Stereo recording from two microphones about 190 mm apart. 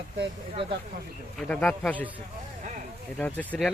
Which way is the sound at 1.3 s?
5° left (ahead or behind).